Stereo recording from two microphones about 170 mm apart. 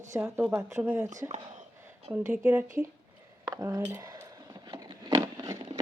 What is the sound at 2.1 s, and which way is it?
Speech, 25° right (ahead or behind).